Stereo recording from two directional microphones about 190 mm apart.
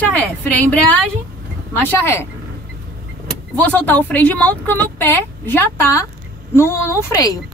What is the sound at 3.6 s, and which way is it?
Speech, 10° left (ahead or behind).